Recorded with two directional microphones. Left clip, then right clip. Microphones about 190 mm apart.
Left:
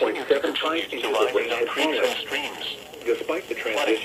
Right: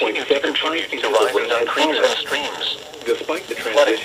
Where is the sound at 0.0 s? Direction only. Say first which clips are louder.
Right 3 dB; 15° right (ahead or behind).